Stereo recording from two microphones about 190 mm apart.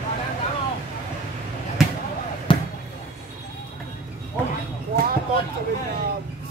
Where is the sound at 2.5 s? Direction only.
25° left (ahead or behind).